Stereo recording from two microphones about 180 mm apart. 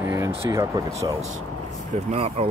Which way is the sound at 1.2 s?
40° right (ahead or behind).